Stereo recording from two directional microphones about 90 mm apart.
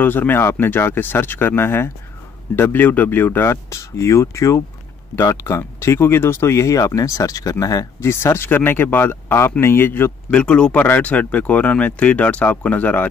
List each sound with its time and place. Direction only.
0.0 s speech: 20° left (ahead or behind); by 8.1 s 40° left (ahead or behind)
8.1 s speech: 30° left (ahead or behind)
10.3 s speech: 10° left (ahead or behind)